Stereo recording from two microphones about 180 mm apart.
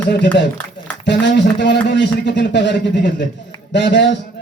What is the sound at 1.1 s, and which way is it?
A man's voice, 75° left (ahead or behind).